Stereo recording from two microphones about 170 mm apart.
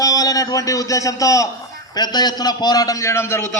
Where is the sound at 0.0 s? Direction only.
20° left (ahead or behind).